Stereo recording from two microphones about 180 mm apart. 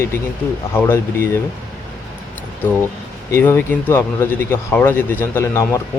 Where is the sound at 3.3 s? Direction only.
10° left (ahead or behind).